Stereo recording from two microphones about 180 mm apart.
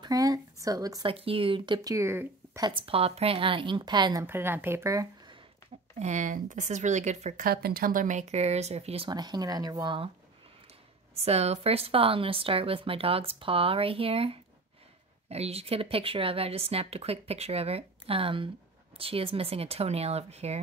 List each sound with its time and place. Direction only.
0.0 s speech: 20° right (ahead or behind)
1.1 s speech: 30° right (ahead or behind)
1.9 s speech: 15° right (ahead or behind)
2.7 s speech: 30° right (ahead or behind)
5.9 s speech: 40° right (ahead or behind)
7.4 s speech: 60° right (ahead or behind); by 10.1 s 30° right (ahead or behind)
11.2 s speech: 35° right (ahead or behind)